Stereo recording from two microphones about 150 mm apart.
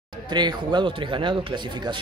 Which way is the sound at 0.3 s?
30° right (ahead or behind).